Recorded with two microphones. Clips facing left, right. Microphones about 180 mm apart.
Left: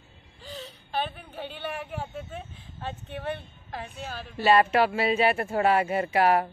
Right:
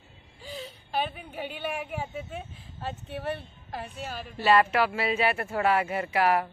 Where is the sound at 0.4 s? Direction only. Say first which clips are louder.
Right 1 dB; 10° right (ahead or behind).